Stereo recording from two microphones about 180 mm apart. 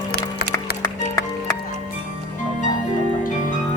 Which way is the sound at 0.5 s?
20° left (ahead or behind).